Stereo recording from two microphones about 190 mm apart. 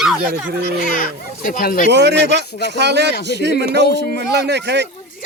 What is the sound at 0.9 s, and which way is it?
Speech, 45° left (ahead or behind).